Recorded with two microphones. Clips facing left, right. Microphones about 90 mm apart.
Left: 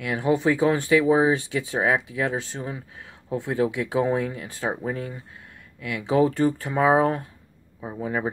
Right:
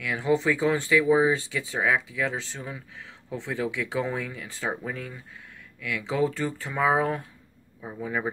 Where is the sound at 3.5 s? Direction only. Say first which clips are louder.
Left 5 dB; 45° left (ahead or behind).